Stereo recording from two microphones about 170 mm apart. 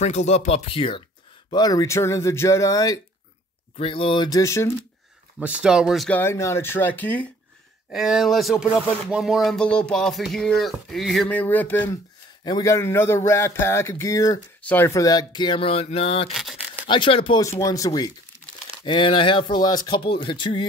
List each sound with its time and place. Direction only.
0.0 s speech: 40° left (ahead or behind); by 3.0 s 20° left (ahead or behind)
3.7 s speech: 30° left (ahead or behind); by 4.7 s 15° left (ahead or behind)
5.4 s speech: 5° right (ahead or behind)
7.9 s speech: centre (ahead or behind)
12.4 s speech: 20° left (ahead or behind)
16.3 s a sound: 5° right (ahead or behind)
16.8 s speech: 30° left (ahead or behind)
17.4 s speech: 20° left (ahead or behind)